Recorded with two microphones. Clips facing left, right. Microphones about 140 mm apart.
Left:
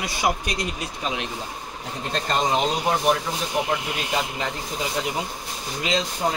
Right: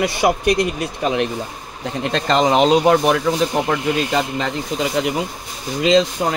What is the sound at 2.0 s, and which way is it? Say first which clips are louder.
Speech: right 7 dB; 90° right.